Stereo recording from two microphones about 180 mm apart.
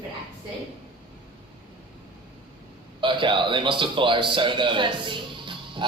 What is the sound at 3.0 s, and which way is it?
A man's voice, 25° right (ahead or behind).